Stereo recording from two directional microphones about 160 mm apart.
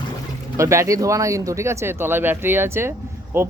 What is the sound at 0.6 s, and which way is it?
Speech, 20° right (ahead or behind).